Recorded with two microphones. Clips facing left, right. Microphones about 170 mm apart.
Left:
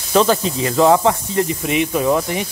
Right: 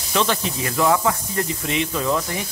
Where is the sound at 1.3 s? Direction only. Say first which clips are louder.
Left 6 dB; 20° left (ahead or behind).